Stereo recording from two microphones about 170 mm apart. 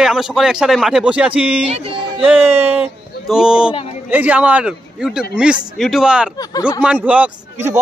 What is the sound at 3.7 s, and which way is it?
Speech, 35° left (ahead or behind).